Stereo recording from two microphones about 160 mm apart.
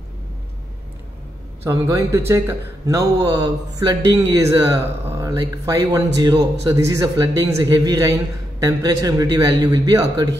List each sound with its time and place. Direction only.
1.6 s a man's voice: 15° right (ahead or behind)